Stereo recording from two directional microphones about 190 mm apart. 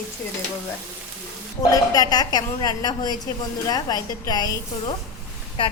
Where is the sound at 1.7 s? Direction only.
20° left (ahead or behind).